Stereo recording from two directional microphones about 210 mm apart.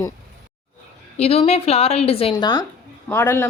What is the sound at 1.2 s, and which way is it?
Speech, 30° left (ahead or behind).